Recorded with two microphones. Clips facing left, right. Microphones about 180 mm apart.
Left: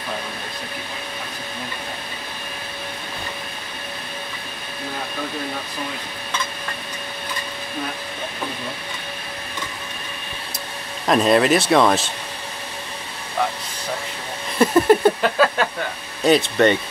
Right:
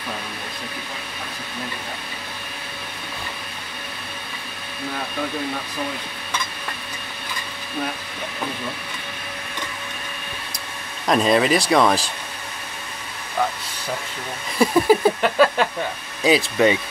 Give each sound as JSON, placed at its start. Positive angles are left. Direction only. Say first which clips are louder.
{"t": 11.1, "sound": "speech", "louder": "left 2 dB", "side_deg": 0}
{"t": 14.6, "sound": "a sound", "louder": "left 2 dB", "side_deg": 0}
{"t": 16.2, "sound": "speech", "louder": "left 2 dB", "side_deg": 0}